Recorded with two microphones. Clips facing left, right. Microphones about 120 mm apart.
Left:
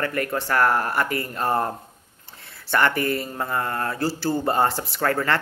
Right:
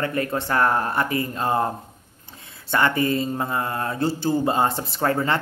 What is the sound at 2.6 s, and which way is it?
Speech, 20° right (ahead or behind).